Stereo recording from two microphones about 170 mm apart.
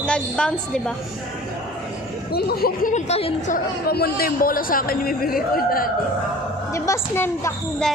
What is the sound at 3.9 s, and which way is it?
Speech, 65° left (ahead or behind).